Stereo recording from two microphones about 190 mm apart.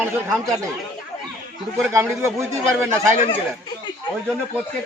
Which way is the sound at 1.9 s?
15° right (ahead or behind).